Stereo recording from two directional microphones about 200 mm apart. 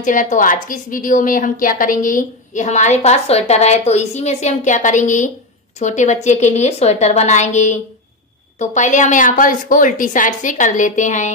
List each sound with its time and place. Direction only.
0.0 s a woman's voice: 40° left (ahead or behind)